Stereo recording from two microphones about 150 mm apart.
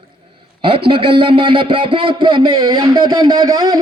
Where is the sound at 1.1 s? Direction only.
35° right (ahead or behind).